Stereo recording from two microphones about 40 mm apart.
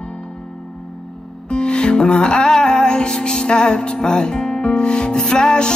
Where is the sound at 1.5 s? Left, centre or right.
Left.